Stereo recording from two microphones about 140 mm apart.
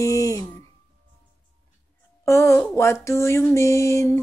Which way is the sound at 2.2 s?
20° left (ahead or behind).